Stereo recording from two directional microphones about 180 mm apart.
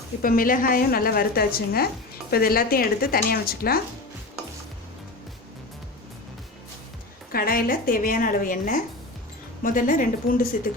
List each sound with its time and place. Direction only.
0.2 s a woman's voice: 50° left (ahead or behind)
7.3 s a woman's voice: 55° left (ahead or behind)